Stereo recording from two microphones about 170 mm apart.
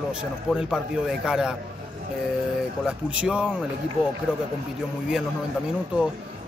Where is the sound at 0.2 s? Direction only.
5° right (ahead or behind).